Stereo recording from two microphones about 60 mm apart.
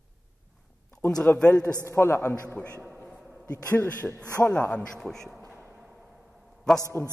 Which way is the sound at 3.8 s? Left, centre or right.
Left.